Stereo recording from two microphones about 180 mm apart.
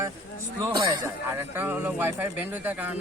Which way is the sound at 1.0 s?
15° right (ahead or behind).